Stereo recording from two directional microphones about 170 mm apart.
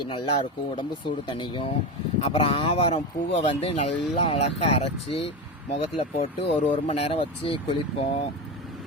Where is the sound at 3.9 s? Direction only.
Centre (ahead or behind).